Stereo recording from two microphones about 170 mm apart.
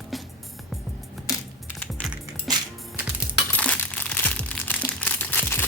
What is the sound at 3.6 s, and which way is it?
Crumpling, 5° left (ahead or behind).